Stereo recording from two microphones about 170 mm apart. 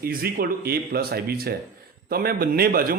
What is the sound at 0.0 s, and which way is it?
A man's voice, 60° right (ahead or behind).